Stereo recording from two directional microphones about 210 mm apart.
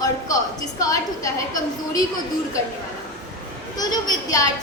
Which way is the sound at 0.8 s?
15° left (ahead or behind).